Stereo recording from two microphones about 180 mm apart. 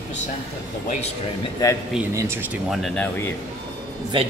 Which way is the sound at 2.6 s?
Centre (ahead or behind).